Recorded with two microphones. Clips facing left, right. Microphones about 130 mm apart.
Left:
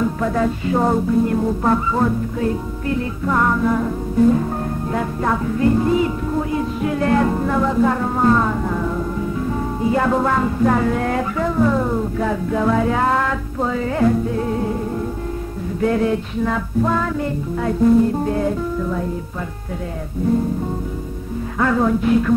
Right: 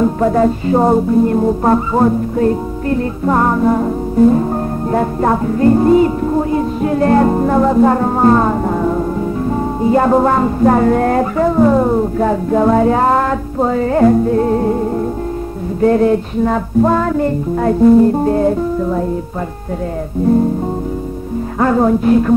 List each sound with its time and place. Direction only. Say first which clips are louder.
0.0 s music: right 7 dB; 40° right (ahead or behind)
15.8 s music: right 7 dB; 40° right (ahead or behind)
21.5 s music: right 5 dB; 35° right (ahead or behind)